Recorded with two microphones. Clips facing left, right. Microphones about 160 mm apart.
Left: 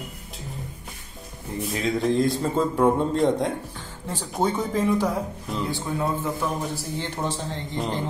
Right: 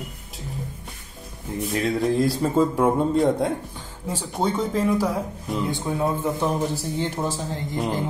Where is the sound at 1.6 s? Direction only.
Centre (ahead or behind).